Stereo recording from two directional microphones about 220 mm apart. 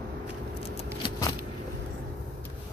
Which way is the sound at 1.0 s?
15° left (ahead or behind).